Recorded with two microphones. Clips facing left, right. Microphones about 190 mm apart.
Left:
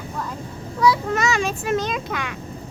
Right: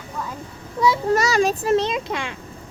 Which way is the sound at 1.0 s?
40° right (ahead or behind).